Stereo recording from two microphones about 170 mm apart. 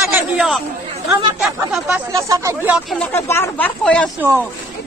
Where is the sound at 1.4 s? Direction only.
Centre (ahead or behind).